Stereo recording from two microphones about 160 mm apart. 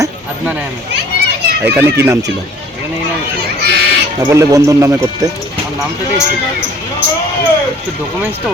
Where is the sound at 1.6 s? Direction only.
10° right (ahead or behind).